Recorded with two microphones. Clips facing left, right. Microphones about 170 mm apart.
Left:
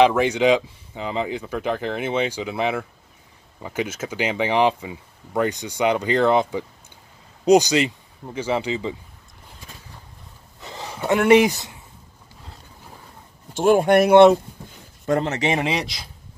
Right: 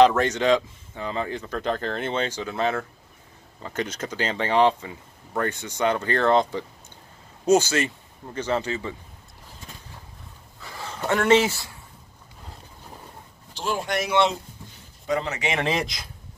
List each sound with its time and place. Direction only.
0.0 s speech: 10° left (ahead or behind)
10.6 s a sound: 20° left (ahead or behind)
13.5 s speech: 50° left (ahead or behind)
15.0 s speech: 45° left (ahead or behind)